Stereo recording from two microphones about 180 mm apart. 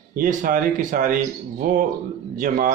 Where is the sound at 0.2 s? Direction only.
50° right (ahead or behind).